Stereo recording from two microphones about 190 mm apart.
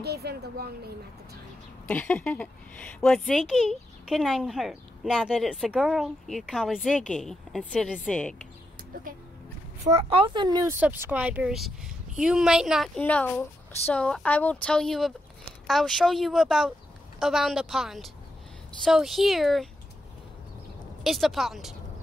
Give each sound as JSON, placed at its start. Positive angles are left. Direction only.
{"t": 0.0, "sound": "a woman's voice", "side_deg": -55}
{"t": 1.9, "sound": "a woman's voice", "side_deg": 10}
{"t": 8.9, "sound": "speech", "side_deg": -45}
{"t": 9.8, "sound": "a woman's voice", "side_deg": -30}
{"t": 21.0, "sound": "a woman's voice", "side_deg": 0}